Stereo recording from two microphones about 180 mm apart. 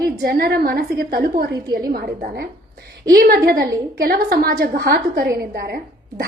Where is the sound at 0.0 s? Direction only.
60° right (ahead or behind).